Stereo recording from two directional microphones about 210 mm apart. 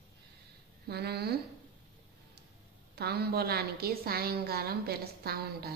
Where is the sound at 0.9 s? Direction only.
50° right (ahead or behind).